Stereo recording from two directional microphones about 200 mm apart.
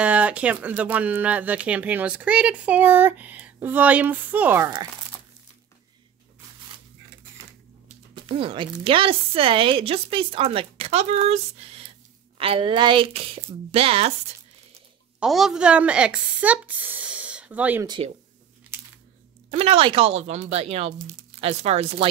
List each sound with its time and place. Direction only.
0.0 s speech: 5° right (ahead or behind)
8.1 s speech: 25° right (ahead or behind)
15.1 s a woman's voice: centre (ahead or behind)
17.8 s speech: 25° right (ahead or behind)
19.5 s a woman's voice: 30° right (ahead or behind)